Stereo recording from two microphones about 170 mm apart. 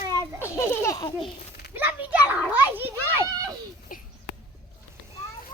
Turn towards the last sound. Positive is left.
turn(degrees=50)  # may be behind; listen again after turning